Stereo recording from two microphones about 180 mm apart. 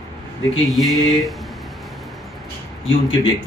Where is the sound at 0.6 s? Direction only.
Centre (ahead or behind).